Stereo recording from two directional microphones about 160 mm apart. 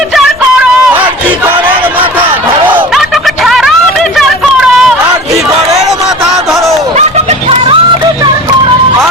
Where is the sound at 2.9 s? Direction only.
Centre (ahead or behind).